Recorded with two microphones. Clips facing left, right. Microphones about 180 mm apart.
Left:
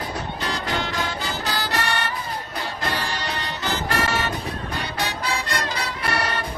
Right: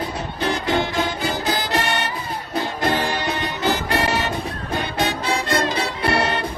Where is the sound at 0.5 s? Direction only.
20° right (ahead or behind).